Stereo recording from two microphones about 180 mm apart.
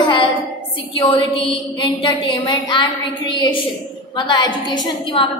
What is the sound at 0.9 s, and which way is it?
A woman's voice, 30° left (ahead or behind).